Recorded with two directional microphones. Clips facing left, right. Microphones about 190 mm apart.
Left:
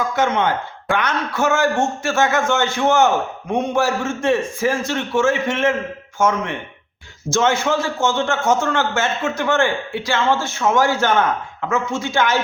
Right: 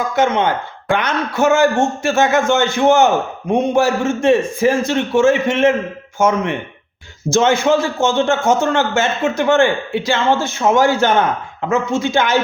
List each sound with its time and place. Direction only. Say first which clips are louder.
0.2 s a man's voice: right 4 dB; 20° right (ahead or behind)